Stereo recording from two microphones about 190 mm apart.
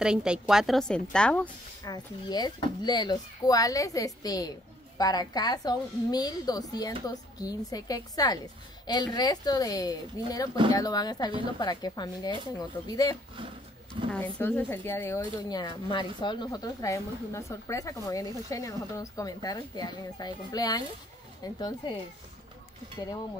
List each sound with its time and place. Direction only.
0.0 s a woman's voice: 5° right (ahead or behind)
1.9 s a woman's voice: 20° left (ahead or behind)